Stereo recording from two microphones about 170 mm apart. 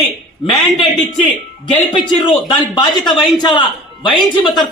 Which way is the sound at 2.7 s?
25° left (ahead or behind).